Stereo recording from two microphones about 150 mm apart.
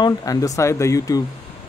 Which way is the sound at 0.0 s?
25° left (ahead or behind).